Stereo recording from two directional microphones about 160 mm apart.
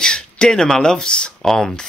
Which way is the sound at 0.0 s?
5° left (ahead or behind).